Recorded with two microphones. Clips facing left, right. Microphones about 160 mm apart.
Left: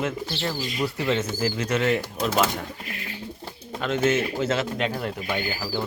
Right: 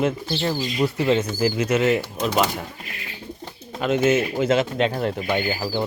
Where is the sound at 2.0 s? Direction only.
5° left (ahead or behind).